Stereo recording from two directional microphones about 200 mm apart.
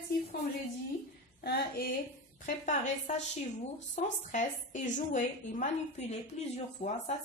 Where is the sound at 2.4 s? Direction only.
40° left (ahead or behind).